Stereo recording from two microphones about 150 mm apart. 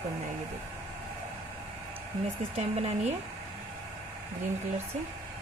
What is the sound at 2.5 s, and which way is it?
Speech, 45° right (ahead or behind).